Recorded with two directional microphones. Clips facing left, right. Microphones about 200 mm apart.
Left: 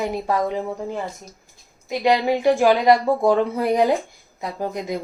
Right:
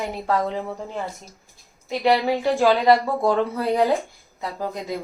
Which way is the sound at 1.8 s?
15° left (ahead or behind).